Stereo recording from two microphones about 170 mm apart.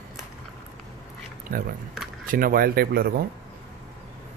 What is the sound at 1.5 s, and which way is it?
Speech, 55° right (ahead or behind).